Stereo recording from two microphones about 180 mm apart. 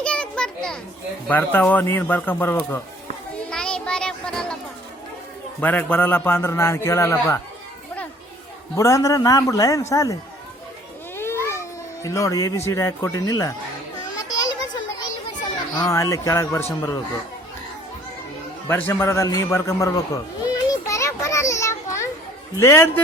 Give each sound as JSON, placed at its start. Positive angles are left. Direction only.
{"t": 0.0, "sound": "children playing", "side_deg": 5}
{"t": 1.3, "sound": "a man's voice", "side_deg": 10}
{"t": 3.5, "sound": "a sound", "side_deg": 5}
{"t": 5.5, "sound": "a man's voice", "side_deg": 10}
{"t": 8.7, "sound": "a man's voice", "side_deg": 15}
{"t": 11.2, "sound": "a sound", "side_deg": 15}
{"t": 12.0, "sound": "a man's voice", "side_deg": 15}
{"t": 14.2, "sound": "children playing", "side_deg": 20}
{"t": 15.9, "sound": "a man's voice", "side_deg": 15}
{"t": 18.7, "sound": "a man's voice", "side_deg": 10}
{"t": 20.4, "sound": "children playing", "side_deg": 20}
{"t": 22.5, "sound": "a man's voice", "side_deg": 15}